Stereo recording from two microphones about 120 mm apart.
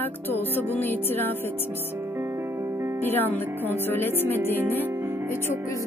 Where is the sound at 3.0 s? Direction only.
15° left (ahead or behind).